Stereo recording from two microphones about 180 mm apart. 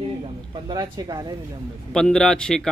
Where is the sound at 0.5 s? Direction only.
20° right (ahead or behind).